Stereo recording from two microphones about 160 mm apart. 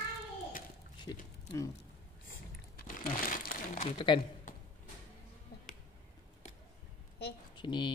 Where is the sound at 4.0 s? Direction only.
30° left (ahead or behind).